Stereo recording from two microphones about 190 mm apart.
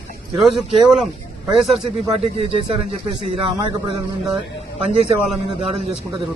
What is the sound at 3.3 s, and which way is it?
Speech, 25° right (ahead or behind).